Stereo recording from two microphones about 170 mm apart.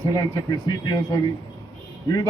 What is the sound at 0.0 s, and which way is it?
Speech, 20° left (ahead or behind).